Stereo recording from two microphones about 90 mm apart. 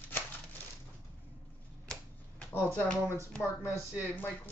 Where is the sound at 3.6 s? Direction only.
25° left (ahead or behind).